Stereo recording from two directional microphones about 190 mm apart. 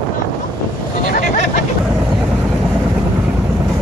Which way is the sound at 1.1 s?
45° left (ahead or behind).